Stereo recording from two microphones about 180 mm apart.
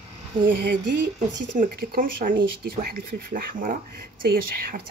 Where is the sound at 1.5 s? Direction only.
45° right (ahead or behind).